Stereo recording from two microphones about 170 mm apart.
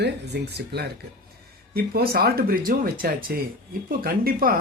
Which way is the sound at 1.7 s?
65° right (ahead or behind).